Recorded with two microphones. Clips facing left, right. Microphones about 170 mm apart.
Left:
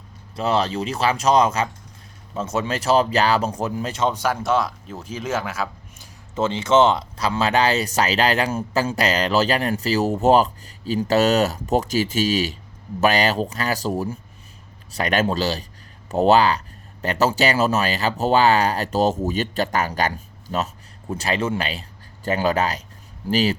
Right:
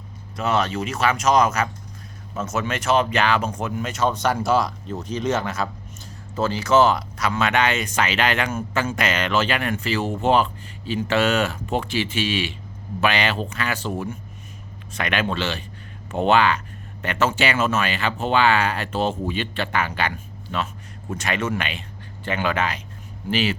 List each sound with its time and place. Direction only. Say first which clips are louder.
0.3 s speech: left 1 dB; 30° left (ahead or behind)
4.1 s speech: right 1 dB; 5° left (ahead or behind)
6.3 s speech: left 1 dB; 25° left (ahead or behind)